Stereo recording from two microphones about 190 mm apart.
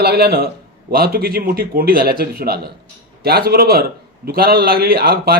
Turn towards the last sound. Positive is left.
turn(degrees=-55)  # may be behind; listen again after turning